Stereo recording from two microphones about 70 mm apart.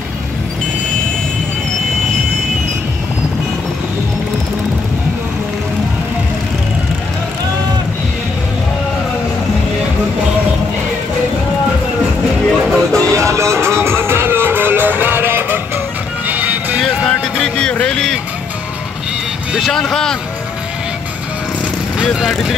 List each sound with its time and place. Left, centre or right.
12.4 s music: centre
13.1 s music: right
17.2 s a sound: centre
17.7 s vehicle: centre
19.6 s vehicle: centre
22.3 s vehicle: centre